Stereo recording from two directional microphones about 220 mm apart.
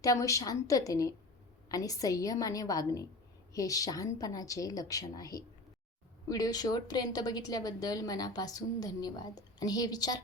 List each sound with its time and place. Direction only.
0.0 s a woman's voice: 15° left (ahead or behind)